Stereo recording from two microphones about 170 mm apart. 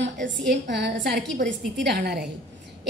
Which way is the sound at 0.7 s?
85° right.